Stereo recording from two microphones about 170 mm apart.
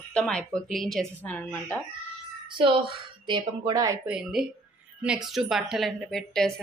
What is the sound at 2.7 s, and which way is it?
Speech, 30° right (ahead or behind).